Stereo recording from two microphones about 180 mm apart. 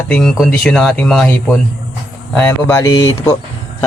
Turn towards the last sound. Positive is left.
turn(degrees=15)  # may be behind; listen again after turning